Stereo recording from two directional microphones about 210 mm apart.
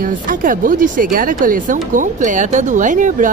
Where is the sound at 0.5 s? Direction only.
40° right (ahead or behind).